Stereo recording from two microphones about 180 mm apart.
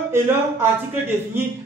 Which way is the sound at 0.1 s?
15° right (ahead or behind).